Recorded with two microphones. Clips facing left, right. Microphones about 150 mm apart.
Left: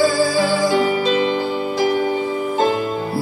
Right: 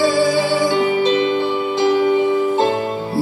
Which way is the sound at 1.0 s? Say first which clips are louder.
Right 2 dB; 35° left (ahead or behind).